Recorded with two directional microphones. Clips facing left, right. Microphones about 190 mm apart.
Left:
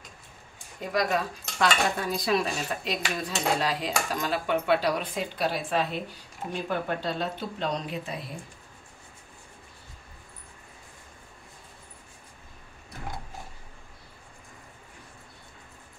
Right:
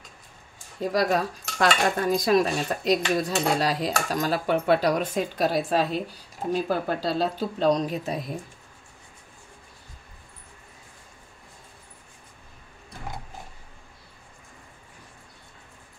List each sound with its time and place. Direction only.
0.7 s cutlery: 40° right (ahead or behind)
3.2 s speech: 40° right (ahead or behind)